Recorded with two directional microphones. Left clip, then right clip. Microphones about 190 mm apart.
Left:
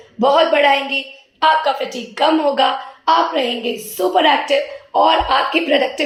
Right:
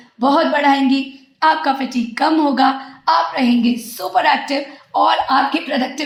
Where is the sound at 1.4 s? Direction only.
40° right (ahead or behind).